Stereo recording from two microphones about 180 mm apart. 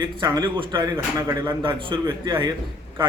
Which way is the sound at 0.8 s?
15° right (ahead or behind).